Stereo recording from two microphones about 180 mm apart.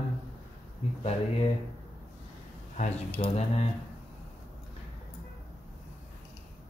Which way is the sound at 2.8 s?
40° left (ahead or behind).